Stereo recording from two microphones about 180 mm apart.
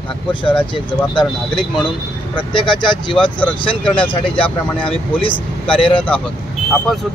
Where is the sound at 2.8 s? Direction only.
25° left (ahead or behind).